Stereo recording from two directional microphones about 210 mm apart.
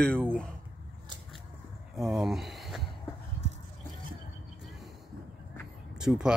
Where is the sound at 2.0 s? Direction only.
Centre (ahead or behind).